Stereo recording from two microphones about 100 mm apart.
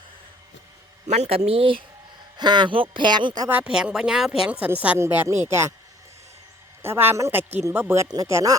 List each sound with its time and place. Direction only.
1.5 s speech: 70° right (ahead or behind)
2.4 s speech: 50° right (ahead or behind)
3.5 s speech: 10° right (ahead or behind)
4.9 s a woman's voice: 25° right (ahead or behind)
6.8 s a woman's voice: 20° right (ahead or behind)
8.0 s speech: 40° right (ahead or behind)
8.3 s a woman's voice: 30° right (ahead or behind)